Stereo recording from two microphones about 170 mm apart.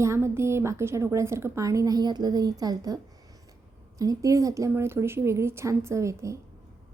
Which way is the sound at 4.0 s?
20° right (ahead or behind).